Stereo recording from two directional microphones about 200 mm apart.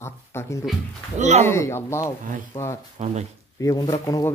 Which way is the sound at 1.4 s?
15° left (ahead or behind).